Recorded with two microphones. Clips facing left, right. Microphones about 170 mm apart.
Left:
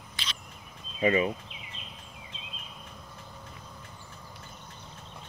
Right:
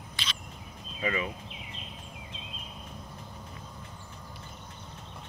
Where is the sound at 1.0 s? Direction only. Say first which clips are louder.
Left 7 dB; 30° left (ahead or behind).